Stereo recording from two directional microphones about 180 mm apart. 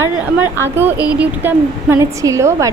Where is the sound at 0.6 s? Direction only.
10° right (ahead or behind).